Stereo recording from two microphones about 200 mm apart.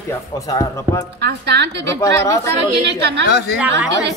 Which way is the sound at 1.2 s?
60° right (ahead or behind).